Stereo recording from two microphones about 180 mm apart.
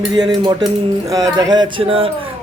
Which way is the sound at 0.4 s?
20° right (ahead or behind).